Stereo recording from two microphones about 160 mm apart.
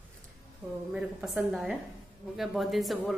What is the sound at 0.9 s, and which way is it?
Speech, 5° right (ahead or behind).